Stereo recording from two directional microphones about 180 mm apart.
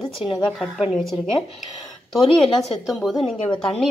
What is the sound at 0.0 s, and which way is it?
A woman's voice, centre (ahead or behind).